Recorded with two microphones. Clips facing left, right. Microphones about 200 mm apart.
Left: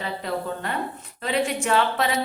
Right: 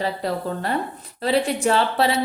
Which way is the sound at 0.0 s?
35° right (ahead or behind).